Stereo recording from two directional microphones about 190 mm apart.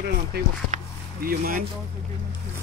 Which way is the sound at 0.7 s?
40° right (ahead or behind).